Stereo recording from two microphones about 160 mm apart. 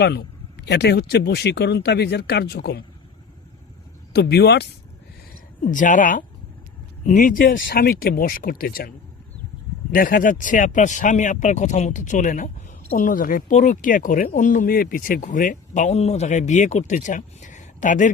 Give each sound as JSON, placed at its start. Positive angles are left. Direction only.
{"t": 0.0, "sound": "speech", "side_deg": 90}
{"t": 4.1, "sound": "speech", "side_deg": 90}
{"t": 5.7, "sound": "speech", "side_deg": 55}
{"t": 9.9, "sound": "speech", "side_deg": 65}